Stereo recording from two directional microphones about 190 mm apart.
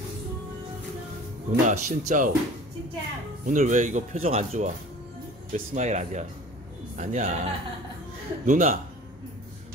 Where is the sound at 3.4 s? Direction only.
40° right (ahead or behind).